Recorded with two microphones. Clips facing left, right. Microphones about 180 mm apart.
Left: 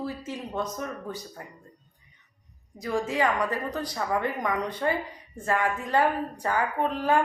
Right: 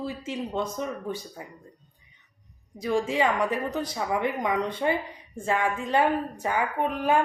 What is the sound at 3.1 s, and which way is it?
A woman's voice, 25° right (ahead or behind).